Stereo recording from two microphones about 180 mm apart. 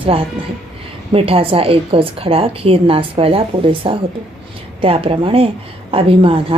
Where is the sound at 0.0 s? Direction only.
30° right (ahead or behind).